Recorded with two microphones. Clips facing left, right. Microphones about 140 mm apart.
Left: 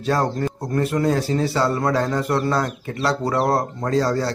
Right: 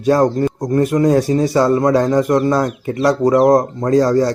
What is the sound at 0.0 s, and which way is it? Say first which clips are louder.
Speech: right 8 dB; 20° right (ahead or behind).